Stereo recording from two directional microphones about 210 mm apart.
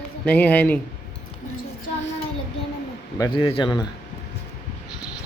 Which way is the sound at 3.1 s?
20° left (ahead or behind).